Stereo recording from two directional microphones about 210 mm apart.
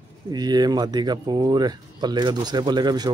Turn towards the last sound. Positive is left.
turn(degrees=-20)  # may be behind; listen again after turning